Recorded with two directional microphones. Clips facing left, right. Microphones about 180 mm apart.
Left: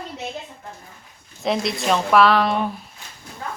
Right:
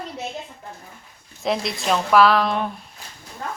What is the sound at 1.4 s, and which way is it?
Speech, centre (ahead or behind).